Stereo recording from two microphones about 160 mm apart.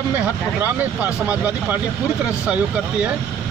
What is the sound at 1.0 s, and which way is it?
Speech, 10° right (ahead or behind).